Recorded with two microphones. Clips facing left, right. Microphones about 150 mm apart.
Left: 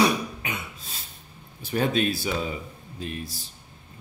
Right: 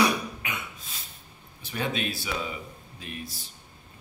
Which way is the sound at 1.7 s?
40° left (ahead or behind).